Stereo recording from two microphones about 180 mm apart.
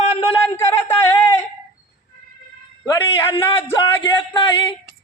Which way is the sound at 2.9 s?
25° left (ahead or behind).